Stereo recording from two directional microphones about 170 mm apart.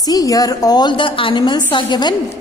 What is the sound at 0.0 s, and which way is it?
A woman's voice, 20° left (ahead or behind).